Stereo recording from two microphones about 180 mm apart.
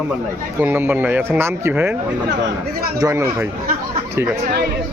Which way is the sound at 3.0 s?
15° right (ahead or behind).